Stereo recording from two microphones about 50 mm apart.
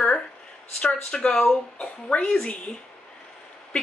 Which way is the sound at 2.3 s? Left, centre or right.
Centre.